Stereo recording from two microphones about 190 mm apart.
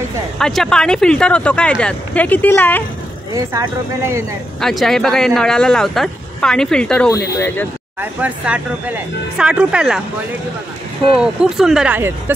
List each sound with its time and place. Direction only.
0.4 s speech: centre (ahead or behind)
3.3 s speech: 15° right (ahead or behind)
4.6 s speech: centre (ahead or behind)
8.0 s speech: 10° right (ahead or behind)
11.1 s speech: 5° right (ahead or behind)